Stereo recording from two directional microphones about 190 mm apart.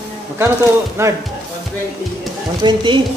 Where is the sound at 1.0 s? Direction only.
15° right (ahead or behind).